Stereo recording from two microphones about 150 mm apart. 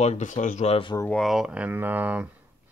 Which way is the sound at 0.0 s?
50° left (ahead or behind).